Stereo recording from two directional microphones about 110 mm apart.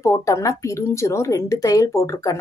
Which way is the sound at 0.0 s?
25° left (ahead or behind).